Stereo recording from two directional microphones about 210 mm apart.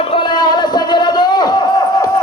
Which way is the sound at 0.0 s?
25° left (ahead or behind).